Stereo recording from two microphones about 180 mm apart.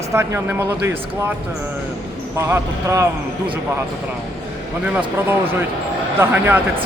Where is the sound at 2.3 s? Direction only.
15° right (ahead or behind).